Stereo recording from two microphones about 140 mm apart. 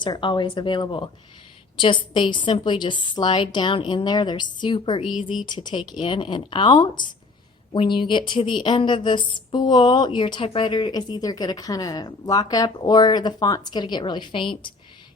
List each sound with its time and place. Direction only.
0.0 s speech: 35° left (ahead or behind)